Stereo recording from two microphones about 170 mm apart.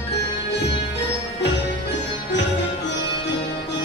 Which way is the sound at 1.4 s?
90° left.